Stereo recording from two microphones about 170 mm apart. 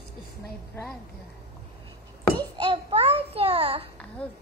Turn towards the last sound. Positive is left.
turn(degrees=-35)  # may be behind; listen again after turning